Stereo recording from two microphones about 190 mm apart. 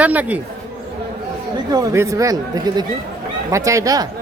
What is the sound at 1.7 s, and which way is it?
Speech, 15° right (ahead or behind).